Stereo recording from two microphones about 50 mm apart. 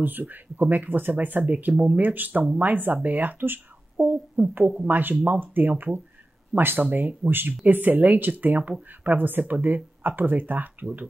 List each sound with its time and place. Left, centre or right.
0.0 s speech: right